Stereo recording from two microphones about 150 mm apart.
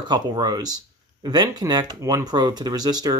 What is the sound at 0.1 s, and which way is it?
Speech, 30° right (ahead or behind).